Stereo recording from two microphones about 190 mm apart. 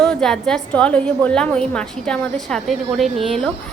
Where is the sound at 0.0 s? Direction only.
5° left (ahead or behind).